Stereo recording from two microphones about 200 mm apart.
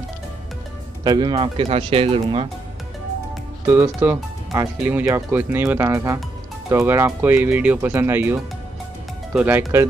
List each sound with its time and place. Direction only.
1.0 s speech: 20° right (ahead or behind)
3.6 s speech: 15° right (ahead or behind)